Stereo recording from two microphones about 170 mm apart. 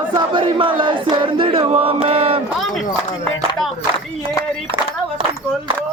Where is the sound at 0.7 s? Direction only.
30° right (ahead or behind).